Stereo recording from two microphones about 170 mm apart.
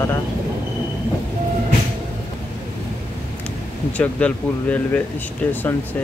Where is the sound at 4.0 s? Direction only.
10° left (ahead or behind).